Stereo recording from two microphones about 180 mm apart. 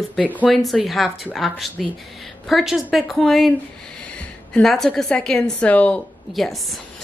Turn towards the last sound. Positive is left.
turn(degrees=0)  # may be behind; listen again after turning